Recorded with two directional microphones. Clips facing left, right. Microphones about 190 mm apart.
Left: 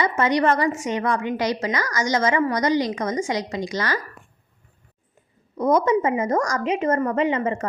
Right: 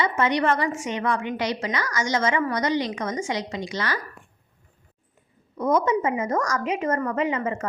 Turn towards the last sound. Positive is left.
turn(degrees=30)  # may be behind; listen again after turning